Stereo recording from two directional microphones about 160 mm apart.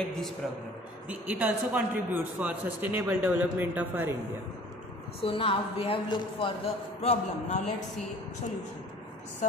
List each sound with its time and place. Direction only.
0.0 s a woman's voice: centre (ahead or behind)
1.0 s a man's voice: 10° right (ahead or behind)
5.2 s a woman's voice: 35° left (ahead or behind)